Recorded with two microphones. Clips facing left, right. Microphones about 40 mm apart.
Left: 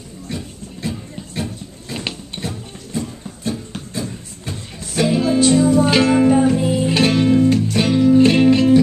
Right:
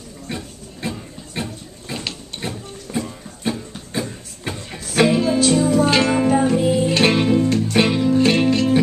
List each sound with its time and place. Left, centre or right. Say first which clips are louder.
0.3 s a sound: left 1 dB; centre
2.0 s a sound: left 4 dB; centre
2.9 s music: even; right
4.5 s music: right 2 dB; right
5.1 s music: left 2 dB; centre
7.0 s music: left 2 dB; right
7.2 s music: left 3 dB; centre
7.8 s music: left 5 dB; centre
8.1 s music: left 4 dB; centre